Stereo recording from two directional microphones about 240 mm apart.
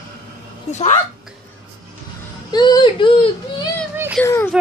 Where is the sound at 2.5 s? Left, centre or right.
Centre.